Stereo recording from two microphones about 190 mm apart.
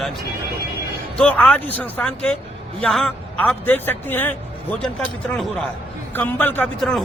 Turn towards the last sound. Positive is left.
turn(degrees=5)  # may be behind; listen again after turning